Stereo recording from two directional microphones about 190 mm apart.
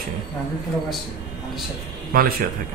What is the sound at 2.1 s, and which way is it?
Speech, 50° right (ahead or behind).